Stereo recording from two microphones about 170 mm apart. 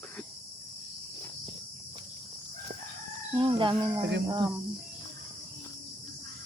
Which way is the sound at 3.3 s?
30° right (ahead or behind).